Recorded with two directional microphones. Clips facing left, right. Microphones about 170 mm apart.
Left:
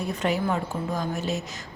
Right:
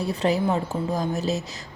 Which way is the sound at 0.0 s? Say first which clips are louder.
Right 3 dB; 35° right (ahead or behind).